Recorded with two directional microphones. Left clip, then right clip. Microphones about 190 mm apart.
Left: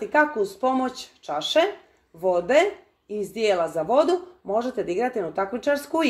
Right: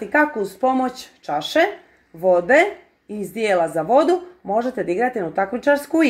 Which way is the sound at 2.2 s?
40° right (ahead or behind).